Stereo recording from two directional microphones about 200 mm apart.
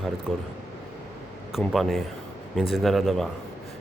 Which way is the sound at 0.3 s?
Centre (ahead or behind).